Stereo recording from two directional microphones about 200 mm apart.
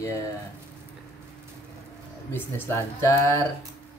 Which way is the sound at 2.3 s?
10° left (ahead or behind).